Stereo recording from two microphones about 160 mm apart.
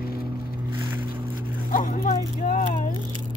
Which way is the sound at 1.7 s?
55° left (ahead or behind).